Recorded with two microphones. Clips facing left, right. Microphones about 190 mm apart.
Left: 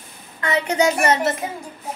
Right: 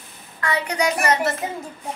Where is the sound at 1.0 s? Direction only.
25° left (ahead or behind).